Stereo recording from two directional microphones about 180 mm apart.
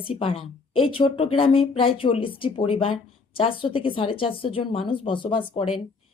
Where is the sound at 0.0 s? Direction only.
30° left (ahead or behind).